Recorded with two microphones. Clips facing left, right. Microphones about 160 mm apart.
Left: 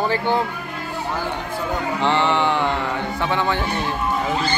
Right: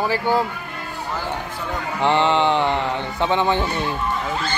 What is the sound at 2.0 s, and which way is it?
Speech, 15° right (ahead or behind).